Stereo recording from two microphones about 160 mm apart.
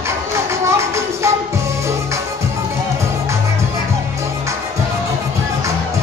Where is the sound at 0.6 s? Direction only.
15° right (ahead or behind).